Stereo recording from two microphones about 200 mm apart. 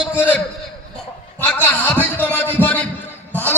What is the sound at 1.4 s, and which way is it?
A man's voice, 10° left (ahead or behind).